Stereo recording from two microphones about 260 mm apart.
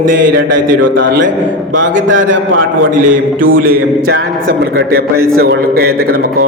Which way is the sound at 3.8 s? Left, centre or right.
Right.